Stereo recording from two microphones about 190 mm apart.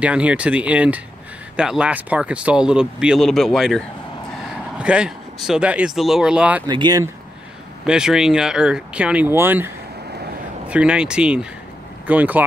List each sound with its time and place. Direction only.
0.0 s speech: 5° right (ahead or behind)
6.7 s speech: 20° right (ahead or behind)
7.8 s speech: 5° right (ahead or behind)
10.7 s speech: 5° right (ahead or behind)